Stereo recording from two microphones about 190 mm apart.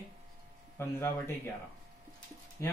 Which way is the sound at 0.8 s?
10° left (ahead or behind).